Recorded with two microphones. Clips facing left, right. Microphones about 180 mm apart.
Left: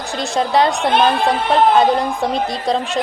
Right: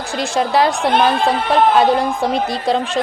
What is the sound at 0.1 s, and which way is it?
A woman's voice, centre (ahead or behind).